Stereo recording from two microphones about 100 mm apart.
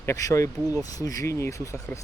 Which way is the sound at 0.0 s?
30° left (ahead or behind).